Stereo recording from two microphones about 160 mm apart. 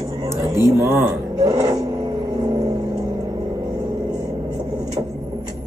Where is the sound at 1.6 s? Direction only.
20° right (ahead or behind).